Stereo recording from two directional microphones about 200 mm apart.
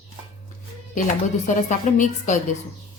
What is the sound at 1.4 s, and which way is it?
Speech, 40° left (ahead or behind).